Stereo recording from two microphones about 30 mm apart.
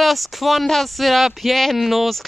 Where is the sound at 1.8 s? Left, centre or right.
Centre.